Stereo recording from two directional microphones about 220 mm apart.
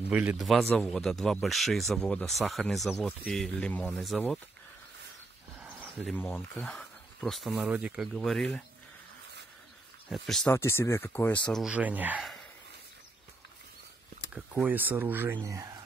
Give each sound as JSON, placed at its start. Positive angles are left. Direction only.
{"t": 0.1, "sound": "speech", "side_deg": -5}
{"t": 5.6, "sound": "a sound", "side_deg": -5}
{"t": 6.1, "sound": "speech", "side_deg": 10}
{"t": 10.0, "sound": "speech", "side_deg": 0}
{"t": 14.3, "sound": "speech", "side_deg": -5}